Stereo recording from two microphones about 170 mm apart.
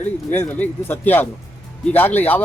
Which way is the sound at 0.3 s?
10° left (ahead or behind).